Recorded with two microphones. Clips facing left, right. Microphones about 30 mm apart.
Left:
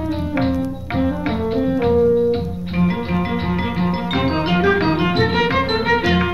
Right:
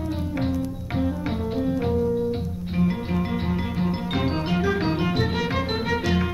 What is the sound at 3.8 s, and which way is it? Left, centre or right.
Music, left.